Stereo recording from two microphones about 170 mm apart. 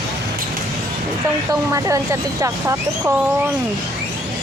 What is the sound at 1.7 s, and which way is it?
Speech, 20° right (ahead or behind).